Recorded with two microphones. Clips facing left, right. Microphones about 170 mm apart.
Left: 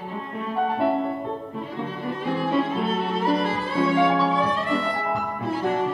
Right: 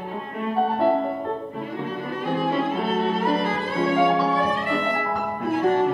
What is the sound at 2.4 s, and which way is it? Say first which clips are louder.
Violin: even; 50° right (ahead or behind).